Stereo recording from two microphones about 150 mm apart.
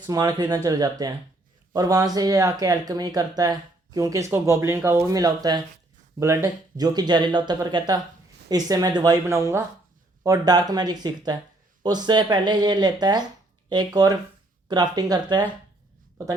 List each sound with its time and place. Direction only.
0.0 s speech: 25° right (ahead or behind)